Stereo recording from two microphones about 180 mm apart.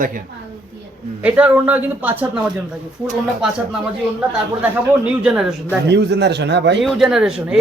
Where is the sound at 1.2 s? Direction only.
10° right (ahead or behind).